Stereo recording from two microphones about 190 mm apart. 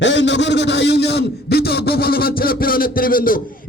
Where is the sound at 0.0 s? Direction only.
70° left (ahead or behind).